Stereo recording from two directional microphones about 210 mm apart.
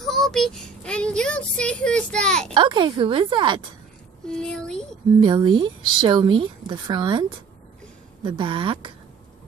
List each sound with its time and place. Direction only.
0.0 s speech: centre (ahead or behind)
2.5 s a woman's voice: 25° right (ahead or behind)
4.3 s speech: 5° left (ahead or behind)
5.2 s a woman's voice: 20° right (ahead or behind)